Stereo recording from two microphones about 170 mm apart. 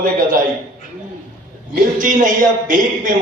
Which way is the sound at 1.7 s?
50° right (ahead or behind).